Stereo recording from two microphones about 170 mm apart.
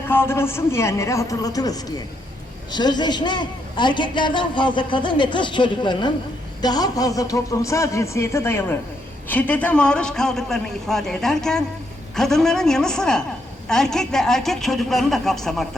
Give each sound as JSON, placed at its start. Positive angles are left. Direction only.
{"t": 0.1, "sound": "a man's voice", "side_deg": 15}